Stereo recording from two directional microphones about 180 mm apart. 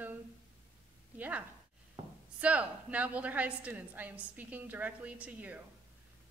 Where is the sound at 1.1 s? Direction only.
10° right (ahead or behind).